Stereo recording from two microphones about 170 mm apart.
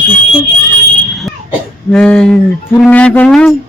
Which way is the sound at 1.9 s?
10° left (ahead or behind).